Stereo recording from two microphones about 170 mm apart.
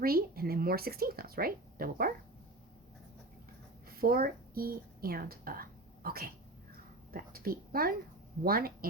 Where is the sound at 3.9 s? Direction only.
60° right (ahead or behind).